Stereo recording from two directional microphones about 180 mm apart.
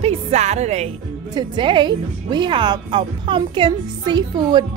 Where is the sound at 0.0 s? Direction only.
35° right (ahead or behind).